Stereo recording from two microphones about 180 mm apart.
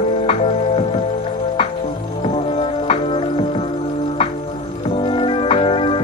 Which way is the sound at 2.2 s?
30° left (ahead or behind).